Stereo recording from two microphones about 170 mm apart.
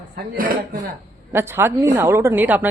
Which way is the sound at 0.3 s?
55° right (ahead or behind).